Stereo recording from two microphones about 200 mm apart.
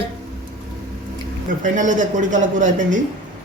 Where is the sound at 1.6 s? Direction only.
40° right (ahead or behind).